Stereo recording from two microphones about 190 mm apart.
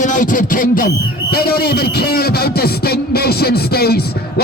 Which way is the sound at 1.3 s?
55° left (ahead or behind).